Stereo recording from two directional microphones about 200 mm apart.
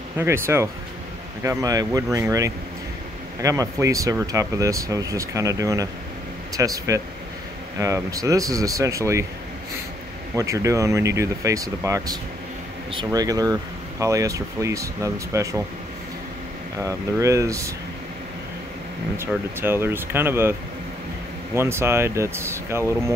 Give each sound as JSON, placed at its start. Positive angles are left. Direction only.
{"t": 0.2, "sound": "speech", "side_deg": -10}
{"t": 10.3, "sound": "speech", "side_deg": -15}
{"t": 16.7, "sound": "speech", "side_deg": -15}
{"t": 19.1, "sound": "speech", "side_deg": -10}
{"t": 21.5, "sound": "speech", "side_deg": -10}